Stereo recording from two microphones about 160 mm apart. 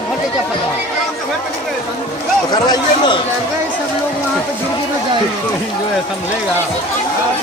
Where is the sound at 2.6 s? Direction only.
25° left (ahead or behind).